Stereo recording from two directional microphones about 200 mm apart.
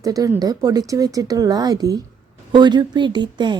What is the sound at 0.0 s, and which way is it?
Speech, 15° right (ahead or behind).